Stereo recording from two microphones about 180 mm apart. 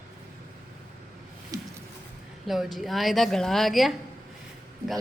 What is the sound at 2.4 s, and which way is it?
A woman's voice, centre (ahead or behind).